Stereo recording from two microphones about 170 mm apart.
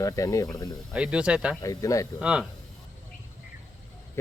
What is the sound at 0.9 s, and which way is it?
Speech, 5° right (ahead or behind).